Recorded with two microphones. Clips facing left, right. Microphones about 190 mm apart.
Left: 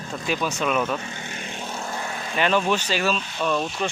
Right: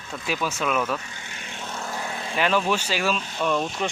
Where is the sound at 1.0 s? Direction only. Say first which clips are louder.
Left 7 dB; 45° left (ahead or behind).